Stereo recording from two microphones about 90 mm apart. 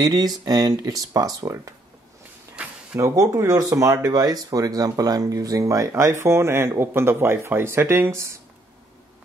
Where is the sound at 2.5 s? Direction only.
15° right (ahead or behind).